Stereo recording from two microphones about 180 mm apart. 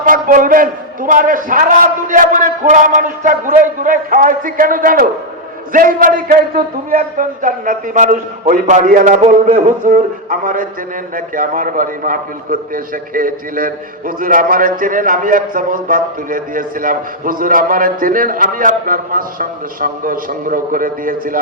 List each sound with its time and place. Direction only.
0.0 s a man's voice: 50° right (ahead or behind)